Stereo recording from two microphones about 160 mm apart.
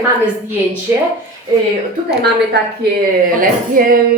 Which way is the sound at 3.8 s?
60° right (ahead or behind).